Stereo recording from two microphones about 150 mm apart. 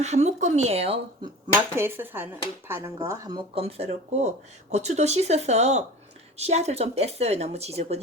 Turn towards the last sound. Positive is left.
turn(degrees=-45)  # may be behind; listen again after turning